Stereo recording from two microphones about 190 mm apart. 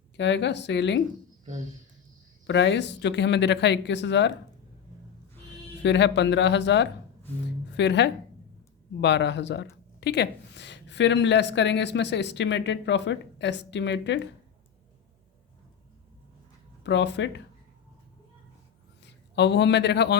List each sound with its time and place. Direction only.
0.2 s speech: 65° left (ahead or behind)
2.5 s speech: 65° left (ahead or behind)
5.8 s a woman's voice: 70° left (ahead or behind)
16.8 s speech: 70° left (ahead or behind)
19.0 s a man's voice: 65° left (ahead or behind)